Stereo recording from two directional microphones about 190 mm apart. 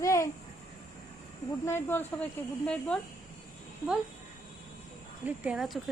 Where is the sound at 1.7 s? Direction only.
10° left (ahead or behind).